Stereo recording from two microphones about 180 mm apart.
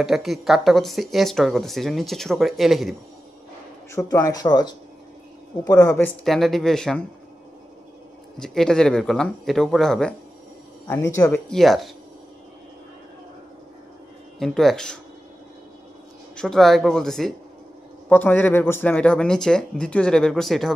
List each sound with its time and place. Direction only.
0.0 s speech: centre (ahead or behind)
3.9 s speech: 20° left (ahead or behind)
6.0 s speech: centre (ahead or behind)
8.4 s speech: 5° left (ahead or behind)
10.9 s speech: 15° left (ahead or behind)
11.4 s speech: centre (ahead or behind)
14.4 s speech: centre (ahead or behind)
16.3 s speech: centre (ahead or behind)